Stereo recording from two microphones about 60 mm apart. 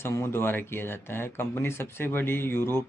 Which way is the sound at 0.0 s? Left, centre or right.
Left.